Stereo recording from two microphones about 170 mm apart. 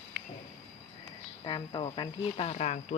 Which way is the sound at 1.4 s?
30° left (ahead or behind).